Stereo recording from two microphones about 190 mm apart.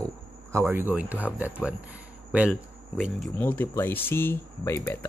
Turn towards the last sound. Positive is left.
turn(degrees=10)  # may be behind; listen again after turning